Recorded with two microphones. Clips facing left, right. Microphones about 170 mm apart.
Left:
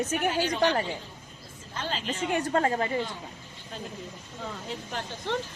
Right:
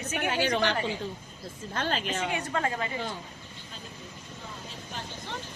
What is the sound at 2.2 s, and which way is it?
Speech, 45° left (ahead or behind).